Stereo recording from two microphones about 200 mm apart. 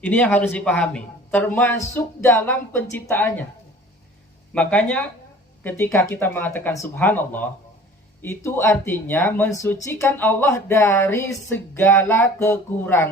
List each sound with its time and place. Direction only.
0.0 s speech: 5° left (ahead or behind)
4.5 s speech: 5° left (ahead or behind)